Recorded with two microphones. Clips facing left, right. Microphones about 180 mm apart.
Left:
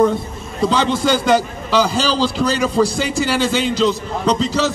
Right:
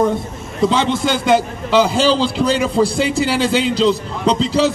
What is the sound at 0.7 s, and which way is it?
A man's voice, 25° right (ahead or behind).